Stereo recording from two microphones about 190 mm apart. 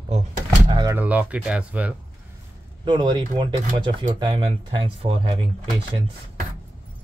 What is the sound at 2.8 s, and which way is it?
Speech, 25° right (ahead or behind).